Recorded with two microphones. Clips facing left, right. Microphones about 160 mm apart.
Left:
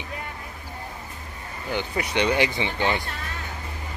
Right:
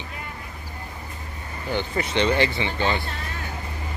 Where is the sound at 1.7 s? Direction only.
10° left (ahead or behind).